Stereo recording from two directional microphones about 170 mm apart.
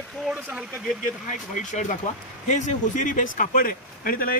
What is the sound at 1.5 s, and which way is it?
A man's voice, 45° left (ahead or behind).